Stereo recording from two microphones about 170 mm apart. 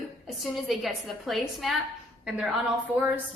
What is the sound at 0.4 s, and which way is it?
A woman's voice, centre (ahead or behind).